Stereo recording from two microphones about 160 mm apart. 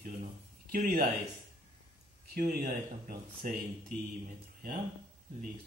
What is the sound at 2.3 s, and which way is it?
Speech, 65° right (ahead or behind).